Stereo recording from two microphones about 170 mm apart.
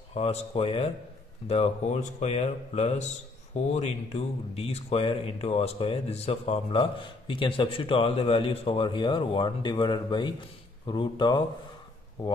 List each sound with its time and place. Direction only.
0.1 s speech: 35° left (ahead or behind)